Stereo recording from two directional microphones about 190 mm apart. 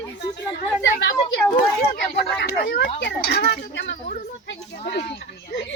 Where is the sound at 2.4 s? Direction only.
55° left (ahead or behind).